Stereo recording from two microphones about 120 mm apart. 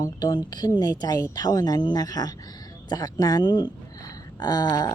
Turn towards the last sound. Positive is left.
turn(degrees=35)  # may be behind; listen again after turning